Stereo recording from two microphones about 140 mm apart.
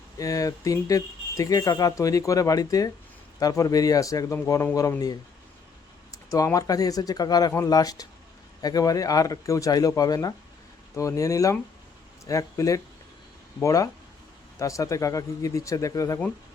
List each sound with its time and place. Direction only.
0.2 s speech: 25° left (ahead or behind)
6.3 s speech: 25° left (ahead or behind)